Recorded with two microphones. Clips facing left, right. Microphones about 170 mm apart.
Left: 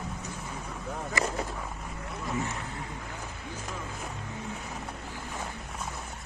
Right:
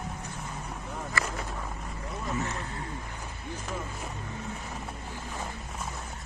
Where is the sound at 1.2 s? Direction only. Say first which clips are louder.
Left 3 dB; 20° left (ahead or behind).